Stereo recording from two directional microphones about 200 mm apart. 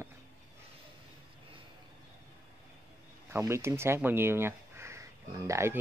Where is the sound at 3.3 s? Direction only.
10° right (ahead or behind).